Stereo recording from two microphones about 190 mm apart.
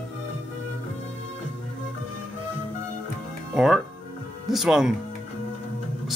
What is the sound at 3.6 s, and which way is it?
Music, centre (ahead or behind).